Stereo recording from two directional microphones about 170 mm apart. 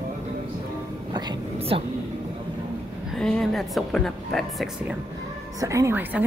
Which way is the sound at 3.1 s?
Centre (ahead or behind).